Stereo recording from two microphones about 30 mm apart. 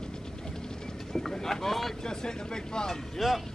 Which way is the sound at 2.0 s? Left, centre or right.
Left.